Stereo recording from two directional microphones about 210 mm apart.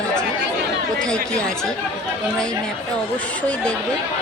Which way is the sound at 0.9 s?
5° left (ahead or behind).